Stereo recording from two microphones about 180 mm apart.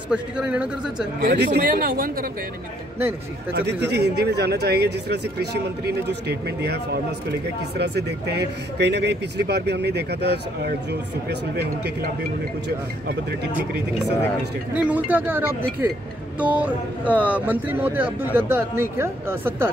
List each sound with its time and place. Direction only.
0.1 s a man's voice: 5° right (ahead or behind)
1.2 s speech: 70° right (ahead or behind)
3.5 s speech: 70° right (ahead or behind)
14.7 s speech: 10° right (ahead or behind)